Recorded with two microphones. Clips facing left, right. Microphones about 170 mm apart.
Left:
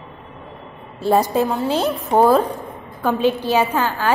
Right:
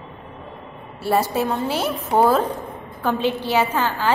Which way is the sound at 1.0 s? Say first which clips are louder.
Left 3 dB; 15° left (ahead or behind).